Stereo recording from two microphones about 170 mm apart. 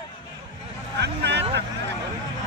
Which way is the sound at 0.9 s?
85° right.